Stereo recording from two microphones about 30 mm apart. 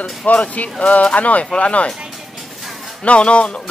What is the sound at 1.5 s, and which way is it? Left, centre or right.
Speech, left.